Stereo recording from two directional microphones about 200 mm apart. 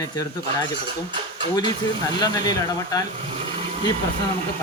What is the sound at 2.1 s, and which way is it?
Speech, 20° left (ahead or behind).